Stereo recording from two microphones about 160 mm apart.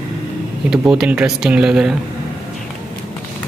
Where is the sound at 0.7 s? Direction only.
5° right (ahead or behind).